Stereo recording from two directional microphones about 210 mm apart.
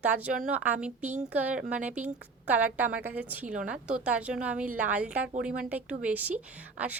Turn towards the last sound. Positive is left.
turn(degrees=-5)  # may be behind; listen again after turning